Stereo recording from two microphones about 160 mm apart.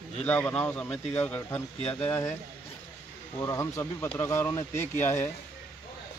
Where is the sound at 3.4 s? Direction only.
20° left (ahead or behind).